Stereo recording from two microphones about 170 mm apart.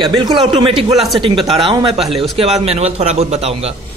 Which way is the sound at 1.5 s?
30° right (ahead or behind).